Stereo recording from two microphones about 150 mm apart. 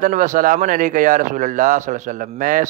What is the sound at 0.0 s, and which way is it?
A man's voice, 60° right (ahead or behind).